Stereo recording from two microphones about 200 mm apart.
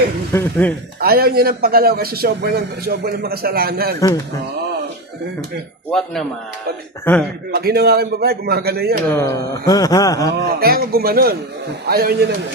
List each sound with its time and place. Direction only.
0.3 s wail: 10° left (ahead or behind)
0.9 s a man's voice: 50° right (ahead or behind)
5.9 s speech: centre (ahead or behind)
7.0 s wail: 10° left (ahead or behind)
7.5 s a man's voice: 50° right (ahead or behind)
9.1 s wail: 15° left (ahead or behind)
10.4 s a man's voice: 50° right (ahead or behind)